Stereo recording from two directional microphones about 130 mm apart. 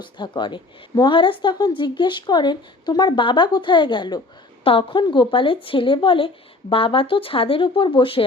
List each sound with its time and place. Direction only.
0.0 s a woman's voice: 35° left (ahead or behind)